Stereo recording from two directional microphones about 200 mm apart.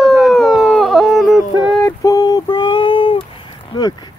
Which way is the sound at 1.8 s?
15° left (ahead or behind).